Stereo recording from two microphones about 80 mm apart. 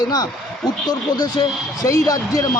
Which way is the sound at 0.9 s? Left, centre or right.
Left.